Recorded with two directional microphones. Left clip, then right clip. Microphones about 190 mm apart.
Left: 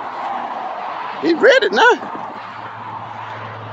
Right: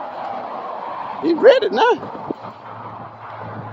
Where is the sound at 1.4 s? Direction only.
10° left (ahead or behind).